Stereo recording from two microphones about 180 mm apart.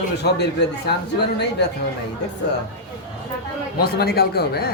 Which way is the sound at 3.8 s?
60° left (ahead or behind).